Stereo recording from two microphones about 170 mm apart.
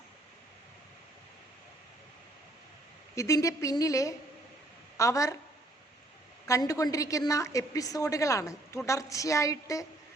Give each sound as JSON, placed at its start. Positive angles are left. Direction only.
{"t": 3.2, "sound": "a woman's voice", "side_deg": 20}
{"t": 6.5, "sound": "a woman's voice", "side_deg": 20}